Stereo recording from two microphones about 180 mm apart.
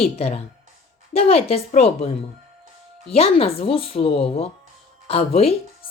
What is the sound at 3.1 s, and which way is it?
Speech, 35° left (ahead or behind).